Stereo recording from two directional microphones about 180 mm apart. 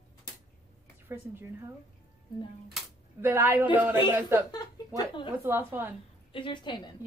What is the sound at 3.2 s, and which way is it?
Speech, 15° right (ahead or behind).